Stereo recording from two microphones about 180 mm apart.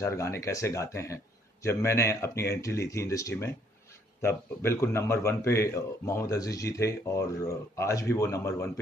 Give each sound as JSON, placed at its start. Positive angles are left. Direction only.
{"t": 0.0, "sound": "speech", "side_deg": 15}